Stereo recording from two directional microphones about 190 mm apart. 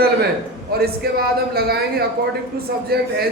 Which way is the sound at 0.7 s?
55° right (ahead or behind).